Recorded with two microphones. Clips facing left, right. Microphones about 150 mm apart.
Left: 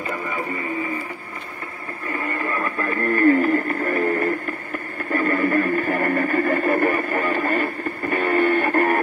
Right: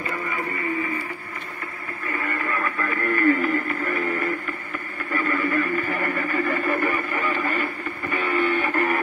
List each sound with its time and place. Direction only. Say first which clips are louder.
2.2 s radio: left 2 dB; 20° left (ahead or behind)
2.6 s music: left 3 dB; 35° left (ahead or behind)